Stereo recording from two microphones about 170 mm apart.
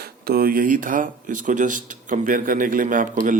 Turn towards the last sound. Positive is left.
turn(degrees=-50)  # may be behind; listen again after turning